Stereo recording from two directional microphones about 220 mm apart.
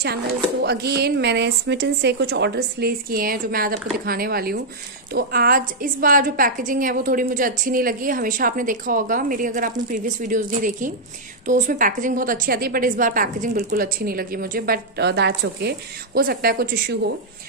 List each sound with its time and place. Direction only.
0.0 s a woman's voice: 45° right (ahead or behind)